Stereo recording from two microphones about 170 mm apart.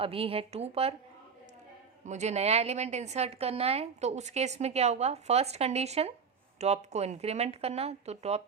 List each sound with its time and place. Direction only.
0.0 s a woman's voice: 35° right (ahead or behind)
2.0 s a woman's voice: 40° right (ahead or behind)